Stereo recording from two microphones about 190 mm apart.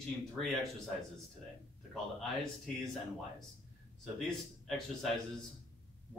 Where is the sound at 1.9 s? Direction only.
Centre (ahead or behind).